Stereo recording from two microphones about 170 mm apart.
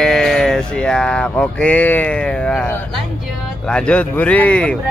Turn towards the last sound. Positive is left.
turn(degrees=10)  # may be behind; listen again after turning